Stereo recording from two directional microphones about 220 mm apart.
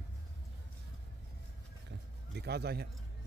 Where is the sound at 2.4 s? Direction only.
45° right (ahead or behind).